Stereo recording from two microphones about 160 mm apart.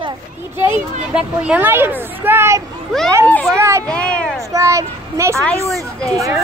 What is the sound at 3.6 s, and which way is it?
Speech, 15° right (ahead or behind).